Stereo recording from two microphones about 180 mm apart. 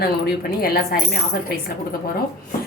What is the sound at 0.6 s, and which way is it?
A woman's voice, 60° left (ahead or behind).